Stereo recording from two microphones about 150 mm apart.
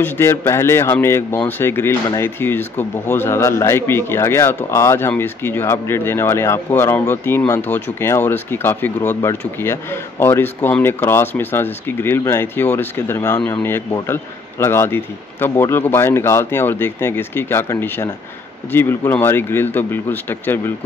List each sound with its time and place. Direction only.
0.0 s a man's voice: 15° left (ahead or behind)